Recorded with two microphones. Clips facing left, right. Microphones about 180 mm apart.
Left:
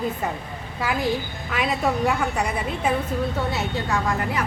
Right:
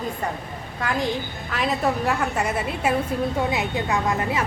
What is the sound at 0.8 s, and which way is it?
A woman's voice, 5° left (ahead or behind).